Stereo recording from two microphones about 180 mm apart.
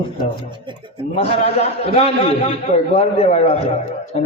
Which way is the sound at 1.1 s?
35° left (ahead or behind).